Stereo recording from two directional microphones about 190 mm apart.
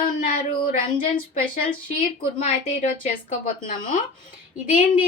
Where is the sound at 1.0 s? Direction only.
50° left (ahead or behind).